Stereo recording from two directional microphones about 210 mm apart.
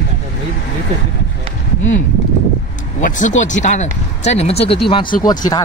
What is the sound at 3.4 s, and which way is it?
Speech, 35° left (ahead or behind).